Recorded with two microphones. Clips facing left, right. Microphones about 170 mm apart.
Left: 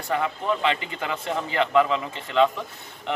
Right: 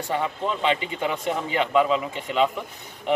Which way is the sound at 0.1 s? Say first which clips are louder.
Left 2 dB; 20° right (ahead or behind).